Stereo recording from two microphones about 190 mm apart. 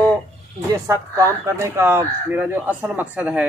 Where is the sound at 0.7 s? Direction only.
15° right (ahead or behind).